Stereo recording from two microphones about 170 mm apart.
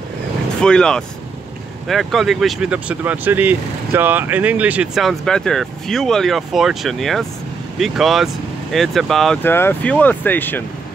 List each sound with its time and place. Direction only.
0.6 s speech: 5° left (ahead or behind)
9.4 s speech: 15° left (ahead or behind)